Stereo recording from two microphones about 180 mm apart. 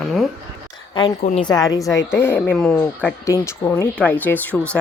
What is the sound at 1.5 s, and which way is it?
A woman's voice, 20° left (ahead or behind).